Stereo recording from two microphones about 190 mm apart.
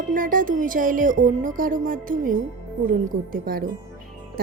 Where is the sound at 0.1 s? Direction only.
45° right (ahead or behind).